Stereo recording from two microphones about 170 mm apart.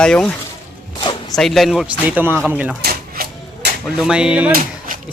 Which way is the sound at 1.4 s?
Centre (ahead or behind).